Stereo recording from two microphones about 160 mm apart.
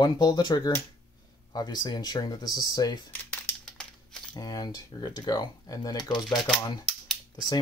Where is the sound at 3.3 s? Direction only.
5° left (ahead or behind).